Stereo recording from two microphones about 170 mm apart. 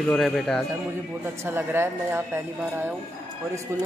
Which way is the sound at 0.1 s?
5° left (ahead or behind).